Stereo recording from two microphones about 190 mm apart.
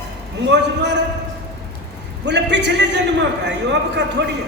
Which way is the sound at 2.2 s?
65° right (ahead or behind).